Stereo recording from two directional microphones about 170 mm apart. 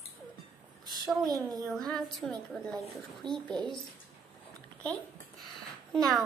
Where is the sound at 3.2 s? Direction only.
25° right (ahead or behind).